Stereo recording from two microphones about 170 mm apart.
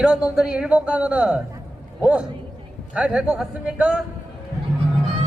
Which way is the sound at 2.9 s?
5° right (ahead or behind).